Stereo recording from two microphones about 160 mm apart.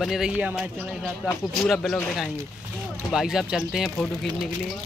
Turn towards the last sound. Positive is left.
turn(degrees=-5)  # may be behind; listen again after turning